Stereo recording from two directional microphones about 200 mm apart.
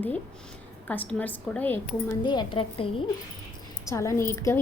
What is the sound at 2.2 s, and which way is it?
Speech, 25° left (ahead or behind).